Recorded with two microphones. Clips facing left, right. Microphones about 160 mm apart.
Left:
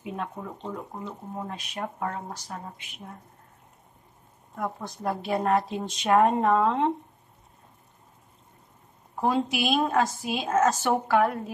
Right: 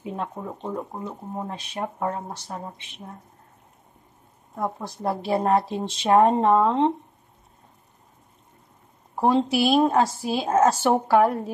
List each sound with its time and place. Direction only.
0.1 s a woman's voice: 30° right (ahead or behind)
4.6 s a woman's voice: 30° right (ahead or behind)
9.2 s a woman's voice: 30° right (ahead or behind)